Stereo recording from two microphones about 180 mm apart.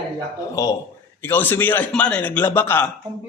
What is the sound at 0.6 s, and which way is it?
A man's voice, 20° left (ahead or behind).